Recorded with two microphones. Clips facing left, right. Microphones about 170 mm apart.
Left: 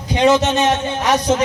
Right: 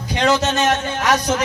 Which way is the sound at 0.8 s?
25° left (ahead or behind).